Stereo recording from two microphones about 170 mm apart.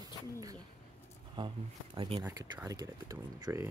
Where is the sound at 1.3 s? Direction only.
30° right (ahead or behind).